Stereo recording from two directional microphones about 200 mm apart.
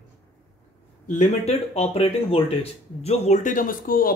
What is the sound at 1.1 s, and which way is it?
Speech, 35° left (ahead or behind).